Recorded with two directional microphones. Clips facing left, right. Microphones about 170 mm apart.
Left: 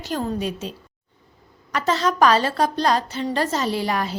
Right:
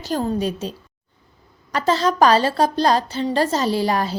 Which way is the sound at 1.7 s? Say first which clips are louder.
Right 3 dB; 30° right (ahead or behind).